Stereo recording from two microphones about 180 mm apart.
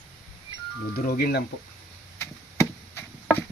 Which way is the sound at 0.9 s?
55° left (ahead or behind).